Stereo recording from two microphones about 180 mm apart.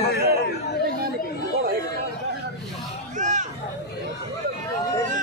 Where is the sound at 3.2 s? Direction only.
40° right (ahead or behind).